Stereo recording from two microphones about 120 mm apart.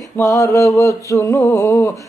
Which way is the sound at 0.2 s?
25° left (ahead or behind).